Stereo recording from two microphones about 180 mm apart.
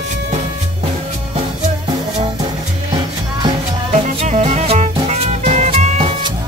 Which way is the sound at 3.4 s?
35° right (ahead or behind).